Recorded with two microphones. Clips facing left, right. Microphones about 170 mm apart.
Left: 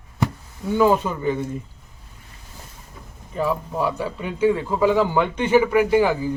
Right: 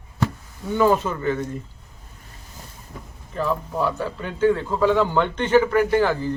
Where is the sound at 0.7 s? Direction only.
10° left (ahead or behind).